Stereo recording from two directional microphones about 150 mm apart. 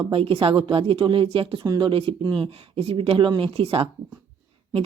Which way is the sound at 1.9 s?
40° right (ahead or behind).